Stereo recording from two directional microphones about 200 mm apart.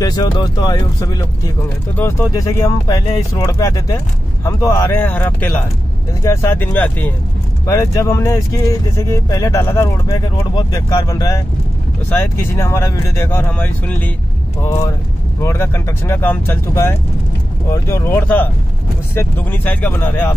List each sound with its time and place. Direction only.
0.0 s speech: 20° left (ahead or behind)
15.4 s speech: 15° left (ahead or behind)